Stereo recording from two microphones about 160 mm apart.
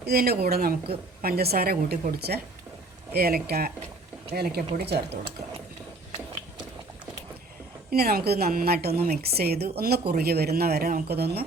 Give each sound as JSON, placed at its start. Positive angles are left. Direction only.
{"t": 0.0, "sound": "a woman's voice", "side_deg": -70}
{"t": 7.9, "sound": "a woman's voice", "side_deg": -70}